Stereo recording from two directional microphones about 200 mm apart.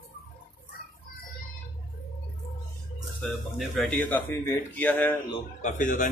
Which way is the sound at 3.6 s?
10° left (ahead or behind).